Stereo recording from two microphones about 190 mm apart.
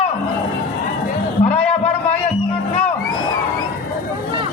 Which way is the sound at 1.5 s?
35° left (ahead or behind).